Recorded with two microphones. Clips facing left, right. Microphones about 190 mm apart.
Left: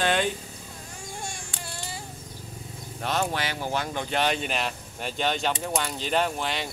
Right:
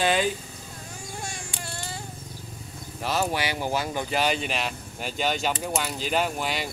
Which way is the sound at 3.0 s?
5° right (ahead or behind).